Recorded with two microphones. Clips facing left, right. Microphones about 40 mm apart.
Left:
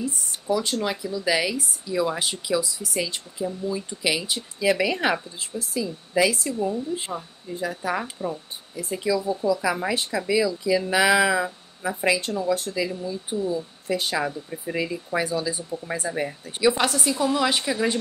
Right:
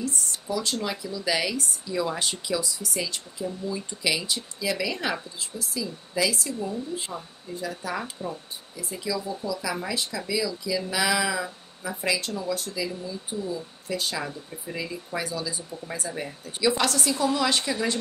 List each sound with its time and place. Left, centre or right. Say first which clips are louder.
0.3 s speech: left 8 dB; left
4.6 s speech: left 8 dB; left
7.1 s speech: left 3 dB; centre
8.7 s speech: left 6 dB; left